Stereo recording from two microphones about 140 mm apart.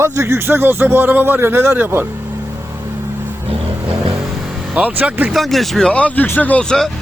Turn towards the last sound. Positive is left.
turn(degrees=5)  # may be behind; listen again after turning